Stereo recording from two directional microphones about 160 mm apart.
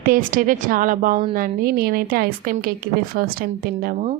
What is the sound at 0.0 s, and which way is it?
A woman's voice, 60° right (ahead or behind).